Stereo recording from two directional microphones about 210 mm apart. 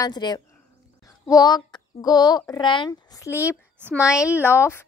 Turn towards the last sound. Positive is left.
turn(degrees=10)  # may be behind; listen again after turning